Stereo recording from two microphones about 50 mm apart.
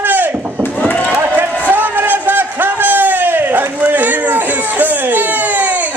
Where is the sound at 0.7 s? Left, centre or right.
Left.